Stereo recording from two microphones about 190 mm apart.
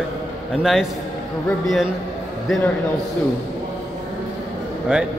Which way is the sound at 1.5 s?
Centre (ahead or behind).